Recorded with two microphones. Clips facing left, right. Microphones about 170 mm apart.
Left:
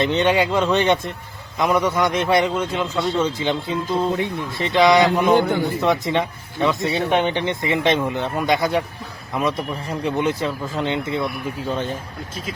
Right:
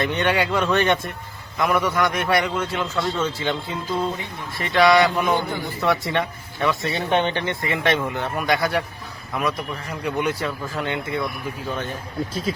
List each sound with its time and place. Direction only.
0.0 s speech: 20° left (ahead or behind)
5.4 s a man's voice: 70° left (ahead or behind)
5.8 s speech: 20° left (ahead or behind)